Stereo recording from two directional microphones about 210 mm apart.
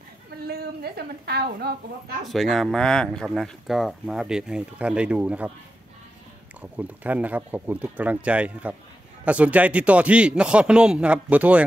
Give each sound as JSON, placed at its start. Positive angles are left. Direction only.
{"t": 0.5, "sound": "a woman's voice", "side_deg": -50}
{"t": 2.2, "sound": "speech", "side_deg": 0}
{"t": 6.6, "sound": "speech", "side_deg": -5}